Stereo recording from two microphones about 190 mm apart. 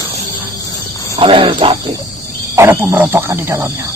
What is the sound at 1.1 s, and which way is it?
Speech, 30° right (ahead or behind).